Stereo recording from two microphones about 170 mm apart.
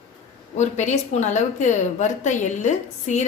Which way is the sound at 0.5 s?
45° left (ahead or behind).